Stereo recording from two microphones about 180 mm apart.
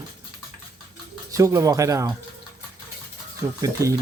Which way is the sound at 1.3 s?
15° right (ahead or behind).